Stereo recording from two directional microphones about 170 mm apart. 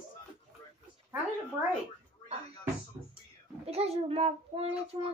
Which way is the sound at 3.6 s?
35° right (ahead or behind).